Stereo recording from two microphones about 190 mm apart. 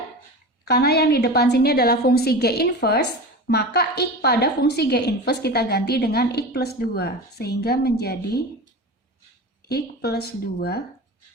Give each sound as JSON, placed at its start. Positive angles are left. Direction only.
{"t": 0.7, "sound": "a woman's voice", "side_deg": 55}
{"t": 9.6, "sound": "a woman's voice", "side_deg": 55}